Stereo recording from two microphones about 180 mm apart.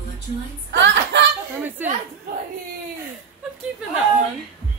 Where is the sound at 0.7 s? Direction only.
90° right.